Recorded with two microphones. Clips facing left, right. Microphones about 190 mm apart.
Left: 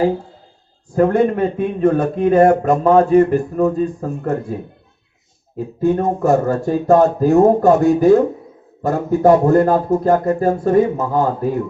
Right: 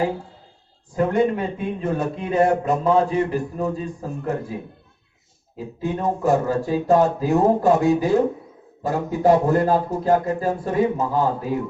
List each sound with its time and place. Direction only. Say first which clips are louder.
0.9 s a man's voice: left 5 dB; 55° left (ahead or behind)
5.5 s a man's voice: left 9 dB; 50° left (ahead or behind)